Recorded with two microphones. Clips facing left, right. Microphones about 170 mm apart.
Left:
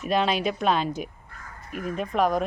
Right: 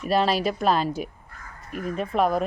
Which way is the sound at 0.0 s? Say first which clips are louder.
Right 2 dB; centre (ahead or behind).